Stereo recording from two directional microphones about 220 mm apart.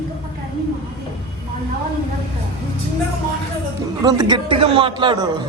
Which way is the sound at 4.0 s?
20° right (ahead or behind).